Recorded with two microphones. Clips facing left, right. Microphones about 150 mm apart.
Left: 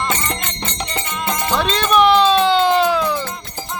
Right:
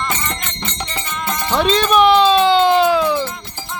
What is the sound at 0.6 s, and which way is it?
Music, 35° left (ahead or behind).